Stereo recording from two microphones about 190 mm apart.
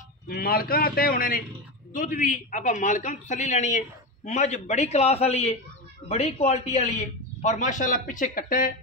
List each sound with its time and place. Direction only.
0.3 s a man's voice: 50° left (ahead or behind)